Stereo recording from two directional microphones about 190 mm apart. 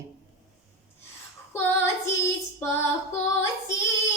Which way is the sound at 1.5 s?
10° left (ahead or behind).